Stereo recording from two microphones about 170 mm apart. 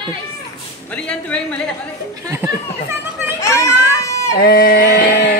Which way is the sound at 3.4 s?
15° left (ahead or behind).